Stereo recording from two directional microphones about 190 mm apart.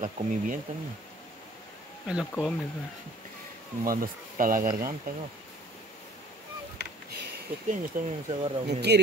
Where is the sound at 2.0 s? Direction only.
5° right (ahead or behind).